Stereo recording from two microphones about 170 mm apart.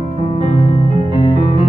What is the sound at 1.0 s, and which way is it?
Music, 30° left (ahead or behind).